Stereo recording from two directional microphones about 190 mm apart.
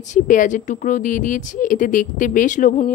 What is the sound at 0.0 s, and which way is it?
Speech, 40° left (ahead or behind).